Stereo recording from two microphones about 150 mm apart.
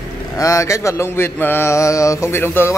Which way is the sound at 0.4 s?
20° left (ahead or behind).